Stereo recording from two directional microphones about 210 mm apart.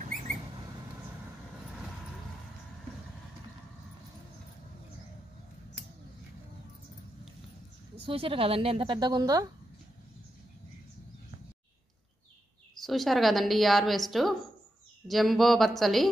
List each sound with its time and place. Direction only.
8.0 s a woman's voice: 25° right (ahead or behind)
12.7 s a woman's voice: centre (ahead or behind)